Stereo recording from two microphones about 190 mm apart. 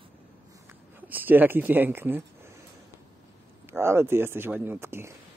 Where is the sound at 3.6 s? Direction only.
15° right (ahead or behind).